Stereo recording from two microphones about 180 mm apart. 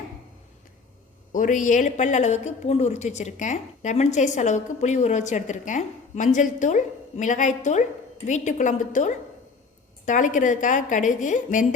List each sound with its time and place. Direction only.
1.3 s a woman's voice: 45° left (ahead or behind)